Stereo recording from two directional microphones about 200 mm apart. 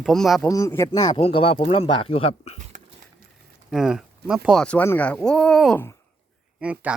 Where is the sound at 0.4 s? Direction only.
15° left (ahead or behind); by 2.6 s 30° left (ahead or behind).